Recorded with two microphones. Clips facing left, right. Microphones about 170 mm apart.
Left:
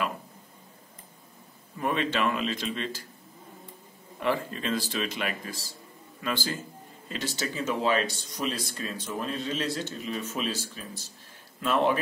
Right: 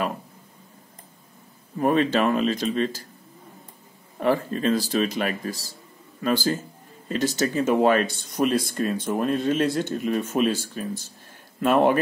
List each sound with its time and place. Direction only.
1.8 s speech: 40° right (ahead or behind)
4.2 s speech: 40° right (ahead or behind)